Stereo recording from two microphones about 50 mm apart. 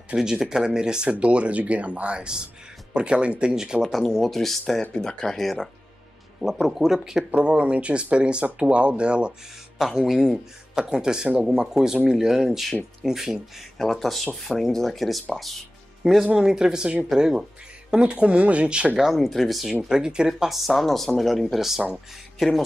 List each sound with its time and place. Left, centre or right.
0.1 s speech: centre
4.2 s speech: centre
7.3 s speech: right
9.9 s speech: centre
13.7 s speech: centre
16.3 s speech: centre
18.9 s speech: centre